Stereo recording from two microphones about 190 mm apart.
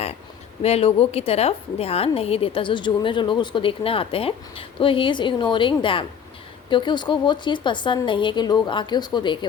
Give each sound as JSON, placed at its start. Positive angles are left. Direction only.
{"t": 0.6, "sound": "a woman's voice", "side_deg": 30}